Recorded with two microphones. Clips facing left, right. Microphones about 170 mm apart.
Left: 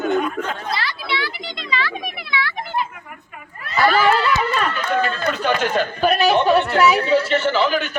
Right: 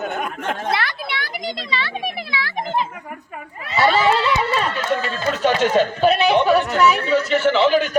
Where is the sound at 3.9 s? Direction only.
25° right (ahead or behind).